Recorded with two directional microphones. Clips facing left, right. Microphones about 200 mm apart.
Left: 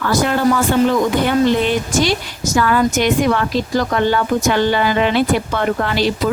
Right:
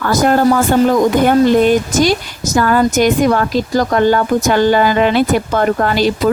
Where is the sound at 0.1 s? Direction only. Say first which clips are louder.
Right 4 dB; 45° right (ahead or behind).